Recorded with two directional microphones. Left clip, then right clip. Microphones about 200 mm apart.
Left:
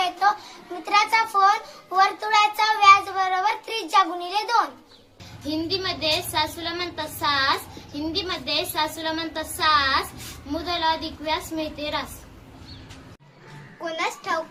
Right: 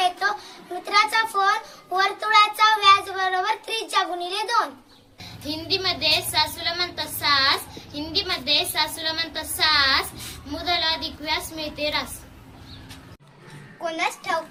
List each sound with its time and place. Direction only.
0.9 s a sound: 15° left (ahead or behind)
2.0 s child singing: 15° left (ahead or behind)
5.5 s a woman's voice: 15° left (ahead or behind)
13.8 s a woman's voice: 15° left (ahead or behind)